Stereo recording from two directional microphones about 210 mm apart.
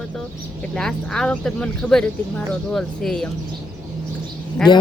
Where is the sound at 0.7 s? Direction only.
5° left (ahead or behind).